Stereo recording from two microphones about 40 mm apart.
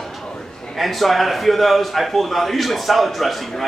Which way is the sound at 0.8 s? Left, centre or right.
Centre.